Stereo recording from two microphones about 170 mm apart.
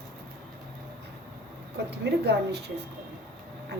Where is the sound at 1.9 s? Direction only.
80° right.